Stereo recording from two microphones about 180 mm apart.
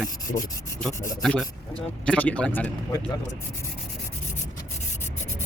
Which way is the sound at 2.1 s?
5° left (ahead or behind).